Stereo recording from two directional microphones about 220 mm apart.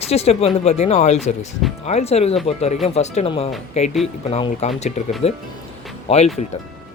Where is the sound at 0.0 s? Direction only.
30° left (ahead or behind).